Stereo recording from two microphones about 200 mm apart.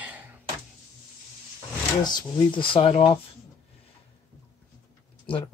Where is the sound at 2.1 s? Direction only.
25° left (ahead or behind).